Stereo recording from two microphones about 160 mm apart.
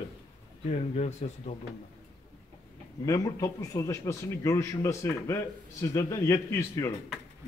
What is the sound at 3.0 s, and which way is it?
A man's voice, 20° left (ahead or behind).